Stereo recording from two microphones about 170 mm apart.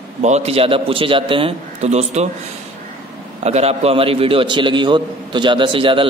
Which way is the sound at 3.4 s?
40° right (ahead or behind).